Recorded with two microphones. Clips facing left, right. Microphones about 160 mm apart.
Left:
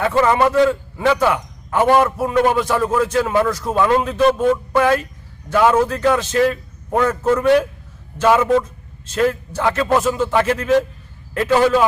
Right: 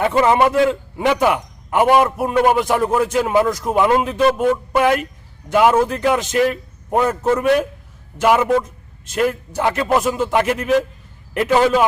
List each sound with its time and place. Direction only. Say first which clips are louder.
0.0 s a man's voice: right 1 dB; 20° right (ahead or behind)
8.2 s a man's voice: left 1 dB; 10° right (ahead or behind)